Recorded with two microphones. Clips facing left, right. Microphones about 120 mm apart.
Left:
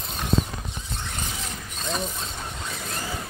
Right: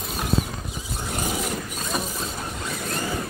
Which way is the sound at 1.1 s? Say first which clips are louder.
Right 11 dB; 50° right (ahead or behind).